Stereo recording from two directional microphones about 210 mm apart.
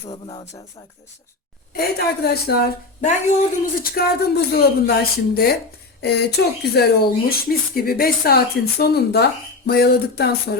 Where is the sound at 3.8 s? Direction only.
45° left (ahead or behind).